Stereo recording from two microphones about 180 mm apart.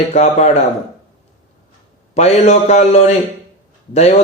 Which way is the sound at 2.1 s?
40° left (ahead or behind).